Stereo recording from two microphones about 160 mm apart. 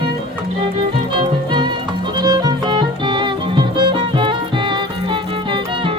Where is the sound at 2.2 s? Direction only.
25° right (ahead or behind).